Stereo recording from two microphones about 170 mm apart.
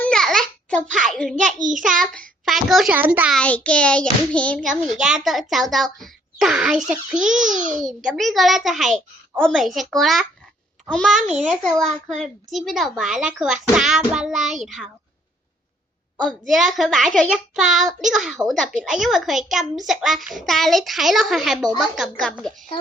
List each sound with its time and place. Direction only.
0.0 s a sound: 5° left (ahead or behind)
1.0 s a child's voice: centre (ahead or behind)
3.4 s a child's voice: 5° left (ahead or behind)
4.7 s a child's voice: 5° right (ahead or behind)
7.4 s a child's voice: 50° right (ahead or behind)
7.9 s a child's voice: centre (ahead or behind)
16.1 s a child's voice: centre (ahead or behind)